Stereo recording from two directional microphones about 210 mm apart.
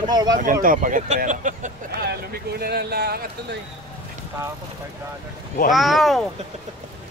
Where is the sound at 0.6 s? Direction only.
40° right (ahead or behind).